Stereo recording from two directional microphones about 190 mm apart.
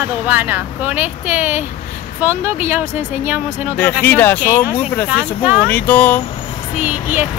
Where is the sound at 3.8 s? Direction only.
10° left (ahead or behind).